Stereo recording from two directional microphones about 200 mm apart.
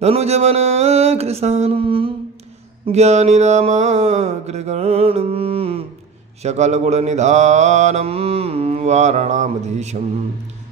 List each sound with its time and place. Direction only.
0.0 s mantra: 30° right (ahead or behind)